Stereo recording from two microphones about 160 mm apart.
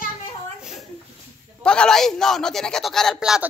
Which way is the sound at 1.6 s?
5° left (ahead or behind).